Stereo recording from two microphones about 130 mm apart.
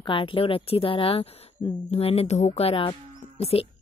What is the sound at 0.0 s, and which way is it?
Speech, 40° left (ahead or behind).